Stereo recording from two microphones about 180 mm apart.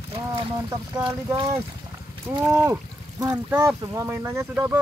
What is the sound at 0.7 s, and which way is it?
Speech, 20° right (ahead or behind).